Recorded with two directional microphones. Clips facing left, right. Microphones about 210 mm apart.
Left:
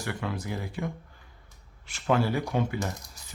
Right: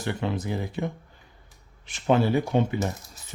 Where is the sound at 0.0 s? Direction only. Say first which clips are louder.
Right 5 dB; 25° right (ahead or behind).